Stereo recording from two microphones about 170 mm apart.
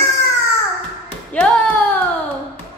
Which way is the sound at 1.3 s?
5° left (ahead or behind).